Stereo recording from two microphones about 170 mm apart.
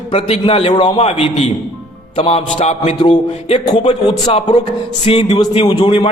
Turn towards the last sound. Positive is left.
turn(degrees=30)  # may be behind; listen again after turning